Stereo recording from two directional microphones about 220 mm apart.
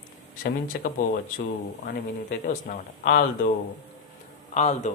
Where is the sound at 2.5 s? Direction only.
40° left (ahead or behind).